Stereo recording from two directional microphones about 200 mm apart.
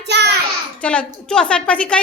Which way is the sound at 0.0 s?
55° right (ahead or behind).